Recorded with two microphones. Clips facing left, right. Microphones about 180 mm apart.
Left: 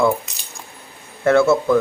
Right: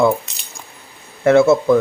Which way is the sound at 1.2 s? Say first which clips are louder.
Right 3 dB; 20° right (ahead or behind).